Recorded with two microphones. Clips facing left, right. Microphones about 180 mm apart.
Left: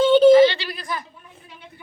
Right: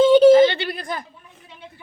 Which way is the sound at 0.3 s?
45° right (ahead or behind).